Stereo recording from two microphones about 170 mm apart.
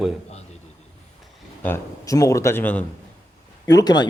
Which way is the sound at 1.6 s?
15° left (ahead or behind).